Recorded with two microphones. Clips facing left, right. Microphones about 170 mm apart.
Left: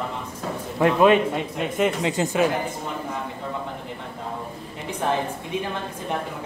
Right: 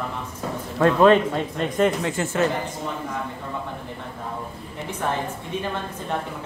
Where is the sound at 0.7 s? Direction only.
15° left (ahead or behind).